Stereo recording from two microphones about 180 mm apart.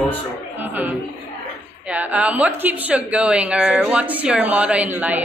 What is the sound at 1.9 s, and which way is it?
A woman's voice, 5° right (ahead or behind).